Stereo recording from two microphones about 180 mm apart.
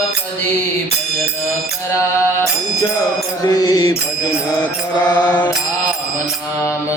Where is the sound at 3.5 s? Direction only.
20° left (ahead or behind).